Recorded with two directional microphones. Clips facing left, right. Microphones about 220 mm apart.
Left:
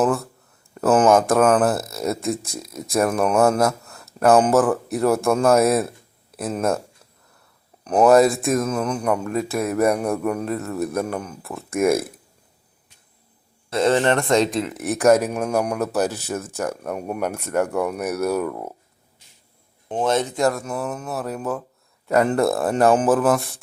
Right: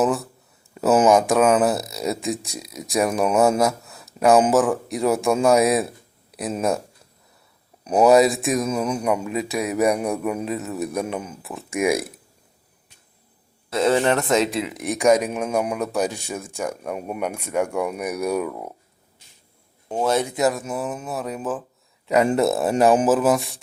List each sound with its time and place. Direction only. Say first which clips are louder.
0.0 s speech: left 1 dB; centre (ahead or behind)
7.9 s speech: left 1 dB; 5° right (ahead or behind)
8.7 s speech: even; 10° right (ahead or behind)
13.7 s speech: left 1 dB; 5° right (ahead or behind)
15.2 s speech: left 1 dB; centre (ahead or behind)
17.7 s speech: left 2 dB; centre (ahead or behind)
20.0 s speech: even; 10° right (ahead or behind)